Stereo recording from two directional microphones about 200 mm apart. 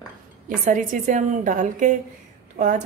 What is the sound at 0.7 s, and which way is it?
A woman's voice, 40° right (ahead or behind).